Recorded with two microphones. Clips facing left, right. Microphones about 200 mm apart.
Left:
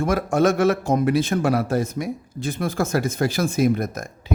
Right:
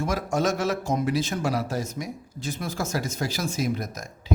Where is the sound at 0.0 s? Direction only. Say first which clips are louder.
Left 6 dB; 55° left (ahead or behind).